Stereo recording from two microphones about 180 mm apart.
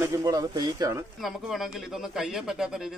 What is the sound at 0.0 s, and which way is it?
Speech, 20° right (ahead or behind).